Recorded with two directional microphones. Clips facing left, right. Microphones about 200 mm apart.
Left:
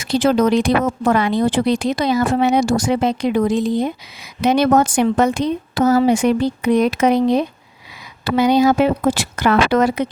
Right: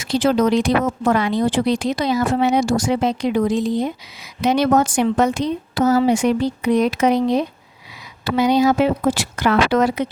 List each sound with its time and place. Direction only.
0.0 s speech: 50° left (ahead or behind)